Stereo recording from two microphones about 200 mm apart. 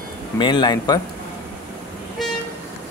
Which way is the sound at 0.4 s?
25° left (ahead or behind).